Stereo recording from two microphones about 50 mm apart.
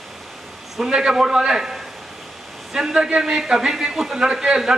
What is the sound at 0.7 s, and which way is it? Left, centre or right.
A man's voice, centre.